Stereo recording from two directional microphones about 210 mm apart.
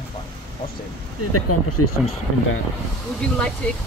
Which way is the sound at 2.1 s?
75° left (ahead or behind).